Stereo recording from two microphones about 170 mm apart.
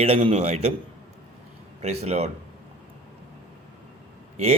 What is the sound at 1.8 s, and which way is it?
Speech, 40° right (ahead or behind).